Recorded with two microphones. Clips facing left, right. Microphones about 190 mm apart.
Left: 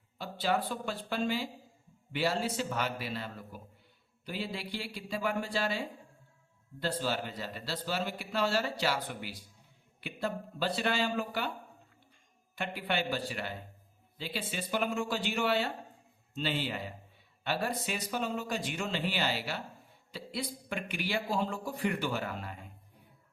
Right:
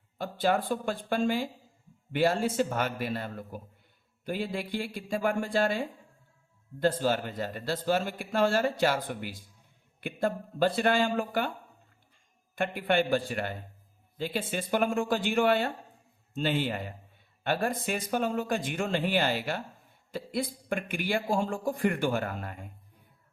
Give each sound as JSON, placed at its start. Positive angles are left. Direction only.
{"t": 0.2, "sound": "speech", "side_deg": -50}
{"t": 12.5, "sound": "speech", "side_deg": -50}